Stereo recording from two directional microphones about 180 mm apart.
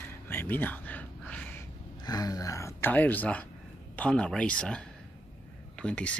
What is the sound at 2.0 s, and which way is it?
Gasp, 20° left (ahead or behind).